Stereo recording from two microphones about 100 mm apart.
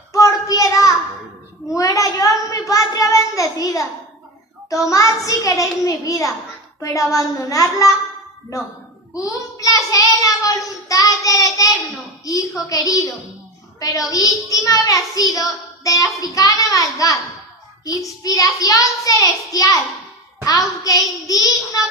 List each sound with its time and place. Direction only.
0.1 s a sound: 35° left (ahead or behind)
4.8 s child singing: 35° left (ahead or behind)
9.1 s child singing: 35° left (ahead or behind)